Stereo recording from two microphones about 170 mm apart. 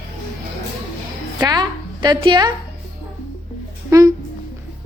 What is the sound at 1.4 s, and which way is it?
A woman's voice, 25° right (ahead or behind).